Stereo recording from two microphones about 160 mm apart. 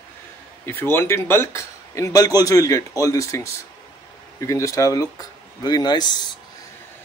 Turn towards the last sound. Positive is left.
turn(degrees=25)  # may be behind; listen again after turning